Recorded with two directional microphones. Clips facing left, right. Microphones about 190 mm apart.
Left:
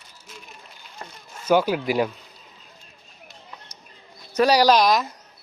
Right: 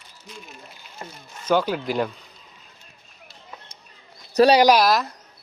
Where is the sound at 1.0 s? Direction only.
10° right (ahead or behind).